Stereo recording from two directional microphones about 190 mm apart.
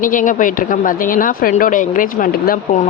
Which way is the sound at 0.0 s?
45° left (ahead or behind).